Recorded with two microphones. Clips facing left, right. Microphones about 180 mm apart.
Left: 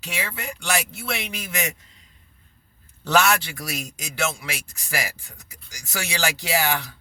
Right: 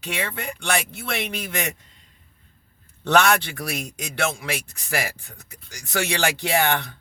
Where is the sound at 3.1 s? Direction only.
55° right (ahead or behind).